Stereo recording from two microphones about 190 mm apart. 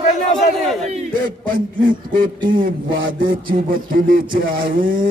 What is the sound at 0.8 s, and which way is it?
Battle cry, 40° right (ahead or behind).